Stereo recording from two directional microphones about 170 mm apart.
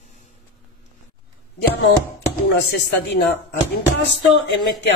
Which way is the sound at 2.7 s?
80° left.